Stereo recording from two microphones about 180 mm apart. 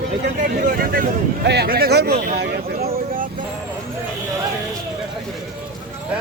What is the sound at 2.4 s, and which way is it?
Vehicle, 60° right (ahead or behind).